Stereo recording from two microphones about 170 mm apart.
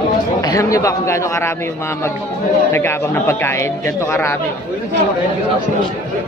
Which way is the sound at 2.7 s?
15° left (ahead or behind).